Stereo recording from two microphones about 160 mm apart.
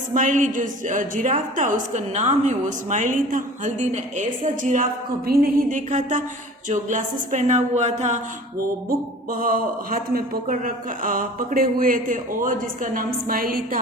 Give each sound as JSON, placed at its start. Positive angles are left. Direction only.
{"t": 0.1, "sound": "a woman's voice", "side_deg": -55}
{"t": 5.6, "sound": "a woman's voice", "side_deg": -50}
{"t": 8.9, "sound": "a man's voice", "side_deg": -60}